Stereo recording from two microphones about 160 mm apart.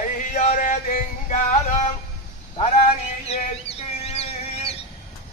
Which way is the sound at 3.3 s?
40° left (ahead or behind).